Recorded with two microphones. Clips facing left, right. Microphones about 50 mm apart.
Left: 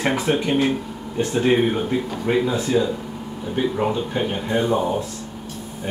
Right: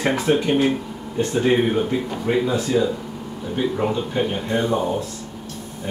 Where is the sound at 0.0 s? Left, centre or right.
Centre.